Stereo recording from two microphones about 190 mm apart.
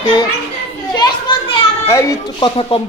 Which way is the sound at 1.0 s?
25° left (ahead or behind).